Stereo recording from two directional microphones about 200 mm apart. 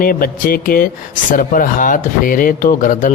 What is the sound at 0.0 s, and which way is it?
Speech, 45° left (ahead or behind).